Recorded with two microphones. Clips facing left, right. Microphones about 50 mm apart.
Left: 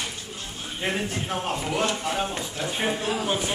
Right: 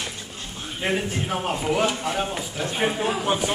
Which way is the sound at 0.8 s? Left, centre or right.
Centre.